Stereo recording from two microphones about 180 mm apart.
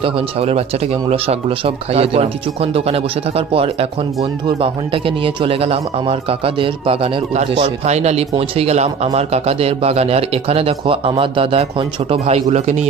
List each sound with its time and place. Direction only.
0.0 s speech: 35° right (ahead or behind)
2.0 s speech: 35° right (ahead or behind)